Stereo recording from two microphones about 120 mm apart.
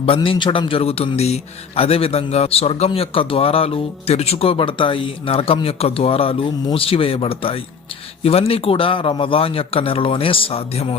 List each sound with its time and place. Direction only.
0.0 s a man's voice: 50° left (ahead or behind)